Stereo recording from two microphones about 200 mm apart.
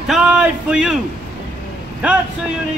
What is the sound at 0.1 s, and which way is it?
Speech, 5° right (ahead or behind).